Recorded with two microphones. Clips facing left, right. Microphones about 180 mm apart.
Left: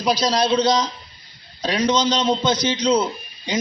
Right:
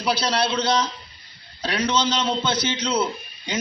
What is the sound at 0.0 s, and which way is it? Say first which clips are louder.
A man's voice: left 3 dB; 15° left (ahead or behind).